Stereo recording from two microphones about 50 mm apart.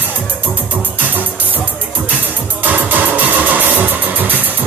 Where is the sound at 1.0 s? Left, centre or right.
Right.